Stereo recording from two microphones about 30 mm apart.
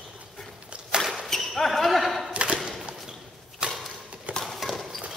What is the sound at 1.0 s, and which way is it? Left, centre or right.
Basketball bounce, centre.